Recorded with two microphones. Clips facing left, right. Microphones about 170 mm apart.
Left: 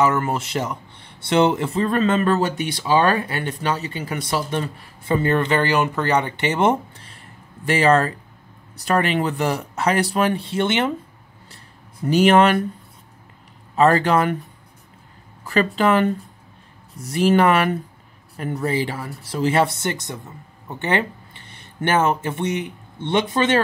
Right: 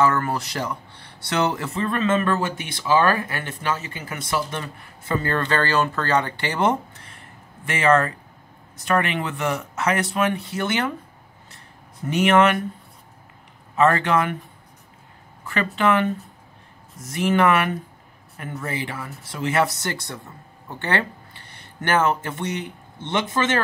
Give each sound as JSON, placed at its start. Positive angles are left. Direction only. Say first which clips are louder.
{"t": 0.0, "sound": "speech", "louder": "left 1 dB", "side_deg": 20}
{"t": 3.4, "sound": "speech", "louder": "left 3 dB", "side_deg": 35}
{"t": 12.1, "sound": "speech", "louder": "left 3 dB", "side_deg": 35}
{"t": 13.7, "sound": "speech", "louder": "left 3 dB", "side_deg": 35}
{"t": 15.4, "sound": "speech", "louder": "left 3 dB", "side_deg": 35}